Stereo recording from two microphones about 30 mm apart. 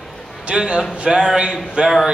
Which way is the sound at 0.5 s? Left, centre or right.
Right.